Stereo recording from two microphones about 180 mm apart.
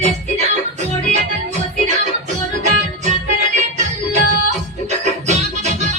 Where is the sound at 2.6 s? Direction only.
40° right (ahead or behind).